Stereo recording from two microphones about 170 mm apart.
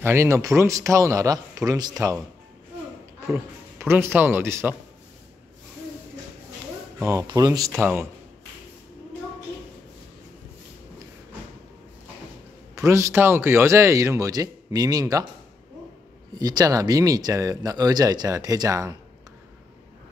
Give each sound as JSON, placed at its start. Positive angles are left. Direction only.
{"t": 0.0, "sound": "speech", "side_deg": -15}
{"t": 3.8, "sound": "speech", "side_deg": -15}
{"t": 7.1, "sound": "speech", "side_deg": -20}
{"t": 12.7, "sound": "speech", "side_deg": -15}
{"t": 16.3, "sound": "speech", "side_deg": -20}